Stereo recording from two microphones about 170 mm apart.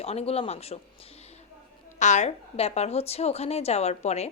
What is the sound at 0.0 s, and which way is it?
Speech, 35° left (ahead or behind).